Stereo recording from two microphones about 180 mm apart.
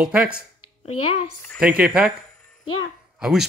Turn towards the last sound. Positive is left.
turn(degrees=0)  # may be behind; listen again after turning